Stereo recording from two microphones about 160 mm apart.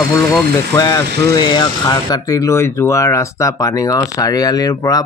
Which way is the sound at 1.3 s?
25° left (ahead or behind).